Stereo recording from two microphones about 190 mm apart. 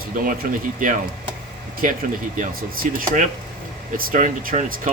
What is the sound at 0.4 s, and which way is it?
Speech, 45° right (ahead or behind).